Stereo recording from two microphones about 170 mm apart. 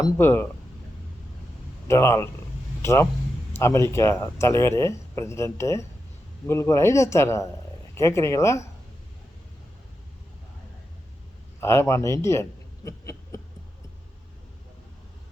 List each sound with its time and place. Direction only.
0.0 s speech: 15° left (ahead or behind)
1.9 s speech: 15° left (ahead or behind)
11.6 s speech: 15° left (ahead or behind)